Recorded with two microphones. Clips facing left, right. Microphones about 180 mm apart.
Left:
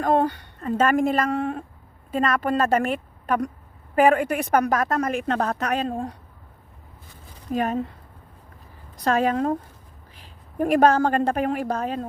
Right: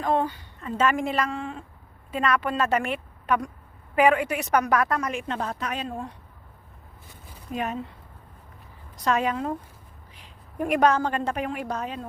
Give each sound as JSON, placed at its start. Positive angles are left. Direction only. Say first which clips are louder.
{"t": 0.0, "sound": "a sound", "louder": "left 4 dB", "side_deg": 45}
{"t": 0.6, "sound": "a woman's voice", "louder": "left 4 dB", "side_deg": 50}
{"t": 2.1, "sound": "a woman's voice", "louder": "left 3 dB", "side_deg": 45}
{"t": 5.7, "sound": "speech", "louder": "left 7 dB", "side_deg": 35}
{"t": 7.5, "sound": "a woman's voice", "louder": "left 6 dB", "side_deg": 45}
{"t": 9.2, "sound": "a woman's voice", "louder": "left 5 dB", "side_deg": 50}
{"t": 10.6, "sound": "a woman's voice", "louder": "left 4 dB", "side_deg": 40}